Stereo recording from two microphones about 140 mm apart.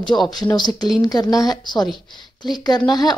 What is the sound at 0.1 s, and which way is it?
A woman's voice, 25° left (ahead or behind).